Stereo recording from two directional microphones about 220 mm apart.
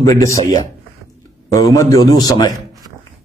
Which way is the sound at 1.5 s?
15° left (ahead or behind).